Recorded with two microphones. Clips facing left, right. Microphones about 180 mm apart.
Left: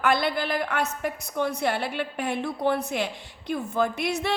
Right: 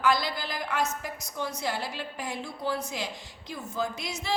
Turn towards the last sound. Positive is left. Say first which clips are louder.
# left 7 dB
turn(degrees=60)  # may be behind; listen again after turning